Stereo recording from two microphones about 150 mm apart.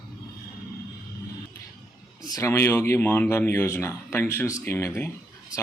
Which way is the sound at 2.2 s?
25° left (ahead or behind).